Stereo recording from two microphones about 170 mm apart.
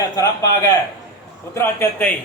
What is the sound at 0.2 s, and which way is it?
A man's voice, 20° left (ahead or behind).